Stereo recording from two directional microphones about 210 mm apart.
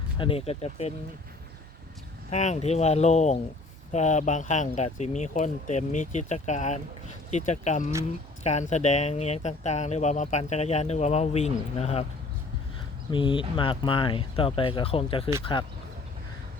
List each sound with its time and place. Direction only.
0.2 s speech: 25° left (ahead or behind)
2.3 s speech: 35° left (ahead or behind)
13.1 s speech: 25° left (ahead or behind)